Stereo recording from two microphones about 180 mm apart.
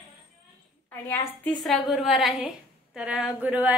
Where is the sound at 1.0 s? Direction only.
10° left (ahead or behind).